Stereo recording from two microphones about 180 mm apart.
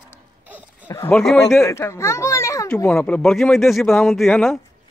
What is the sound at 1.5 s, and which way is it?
A child's voice, 15° left (ahead or behind).